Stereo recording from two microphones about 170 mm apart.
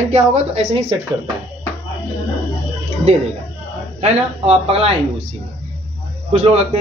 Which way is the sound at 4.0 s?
40° right (ahead or behind).